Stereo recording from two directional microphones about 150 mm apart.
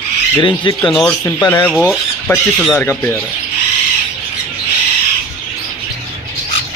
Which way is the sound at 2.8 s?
10° left (ahead or behind).